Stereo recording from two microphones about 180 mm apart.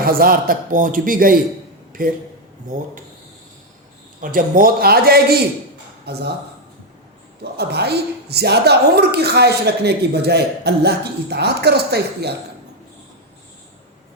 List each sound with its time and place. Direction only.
0.0 s a man's voice: 55° right (ahead or behind)
1.9 s a sound: 50° right (ahead or behind)
4.2 s a woman's voice: 50° right (ahead or behind)
7.4 s a woman's voice: 65° right (ahead or behind)